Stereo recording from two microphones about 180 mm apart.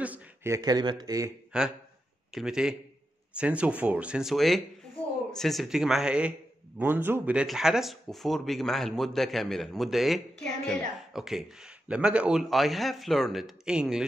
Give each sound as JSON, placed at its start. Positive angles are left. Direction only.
{"t": 0.0, "sound": "speech", "side_deg": -10}
{"t": 1.5, "sound": "speech", "side_deg": -5}